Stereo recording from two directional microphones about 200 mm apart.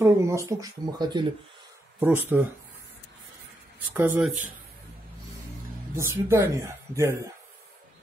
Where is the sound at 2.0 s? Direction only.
10° right (ahead or behind).